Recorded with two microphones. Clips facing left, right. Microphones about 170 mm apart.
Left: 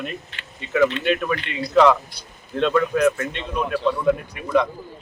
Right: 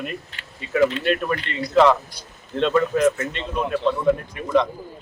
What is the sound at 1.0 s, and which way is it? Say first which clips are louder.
Speech: even; 40° right (ahead or behind).